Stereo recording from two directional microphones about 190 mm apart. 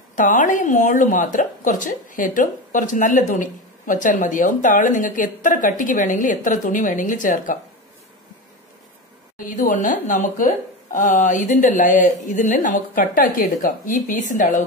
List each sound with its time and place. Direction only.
0.1 s a woman's voice: 45° left (ahead or behind)
9.4 s a woman's voice: 45° left (ahead or behind)